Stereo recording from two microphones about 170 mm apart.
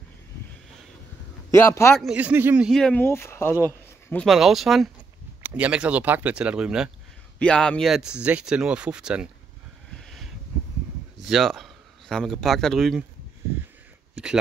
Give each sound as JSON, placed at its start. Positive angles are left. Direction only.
{"t": 1.5, "sound": "speech", "side_deg": 15}
{"t": 2.0, "sound": "speech", "side_deg": -5}
{"t": 2.7, "sound": "speech", "side_deg": 5}
{"t": 4.1, "sound": "speech", "side_deg": 0}
{"t": 9.9, "sound": "a sound", "side_deg": 0}
{"t": 11.2, "sound": "a man's voice", "side_deg": 0}